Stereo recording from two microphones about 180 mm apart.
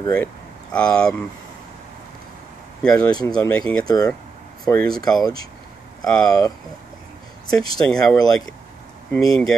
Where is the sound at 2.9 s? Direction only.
20° left (ahead or behind).